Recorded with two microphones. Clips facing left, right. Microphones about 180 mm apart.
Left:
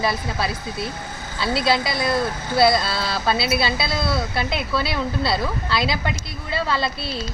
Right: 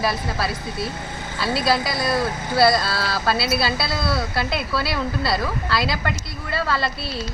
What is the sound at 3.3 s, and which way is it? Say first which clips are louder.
Speech: even; 25° left (ahead or behind).